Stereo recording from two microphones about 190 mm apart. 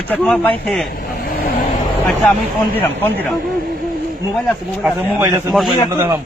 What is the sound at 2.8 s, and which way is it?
Speech, 10° left (ahead or behind).